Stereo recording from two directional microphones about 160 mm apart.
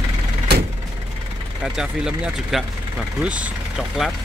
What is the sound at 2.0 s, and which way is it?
Speech, centre (ahead or behind).